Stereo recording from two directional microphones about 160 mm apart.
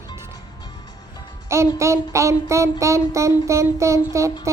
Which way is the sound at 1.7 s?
20° right (ahead or behind).